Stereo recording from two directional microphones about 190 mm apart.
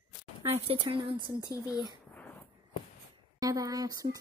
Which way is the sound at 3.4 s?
20° right (ahead or behind).